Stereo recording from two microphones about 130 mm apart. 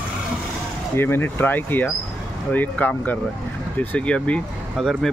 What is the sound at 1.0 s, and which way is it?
Speech, 15° left (ahead or behind).